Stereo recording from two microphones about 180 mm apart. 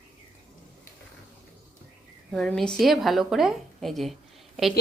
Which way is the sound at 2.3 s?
5° left (ahead or behind).